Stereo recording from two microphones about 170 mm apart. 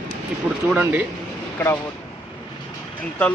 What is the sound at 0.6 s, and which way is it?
Speech, 10° right (ahead or behind).